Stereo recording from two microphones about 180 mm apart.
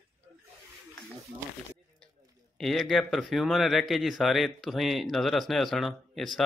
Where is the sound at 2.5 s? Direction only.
Centre (ahead or behind).